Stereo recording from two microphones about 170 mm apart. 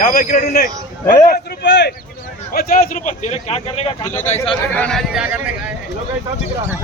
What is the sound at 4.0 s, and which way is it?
Speech, 15° left (ahead or behind).